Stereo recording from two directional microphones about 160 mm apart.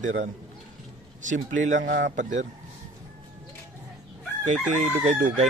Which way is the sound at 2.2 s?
50° right (ahead or behind).